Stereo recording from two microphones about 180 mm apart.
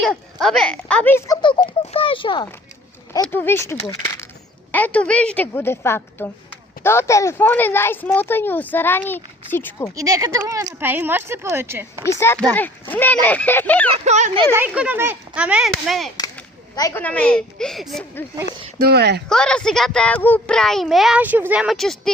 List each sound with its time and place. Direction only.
0.0 s a child's voice: centre (ahead or behind)
1.4 s a child's voice: 25° left (ahead or behind)
3.1 s speech: 15° left (ahead or behind)
9.9 s speech: 20° right (ahead or behind)
12.0 s speech: 15° left (ahead or behind)
13.9 s speech: 40° right (ahead or behind)
14.5 s speech: 10° right (ahead or behind)
16.7 s speech: 15° left (ahead or behind)
18.8 s speech: 65° right (ahead or behind)
19.3 s a child's voice: 5° left (ahead or behind)